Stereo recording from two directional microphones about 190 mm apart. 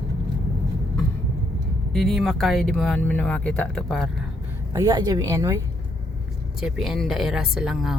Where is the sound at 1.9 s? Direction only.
Centre (ahead or behind).